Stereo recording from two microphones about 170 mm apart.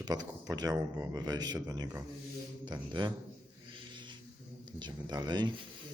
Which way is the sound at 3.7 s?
30° right (ahead or behind).